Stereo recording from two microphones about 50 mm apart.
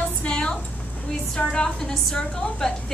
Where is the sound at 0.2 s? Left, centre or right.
Centre.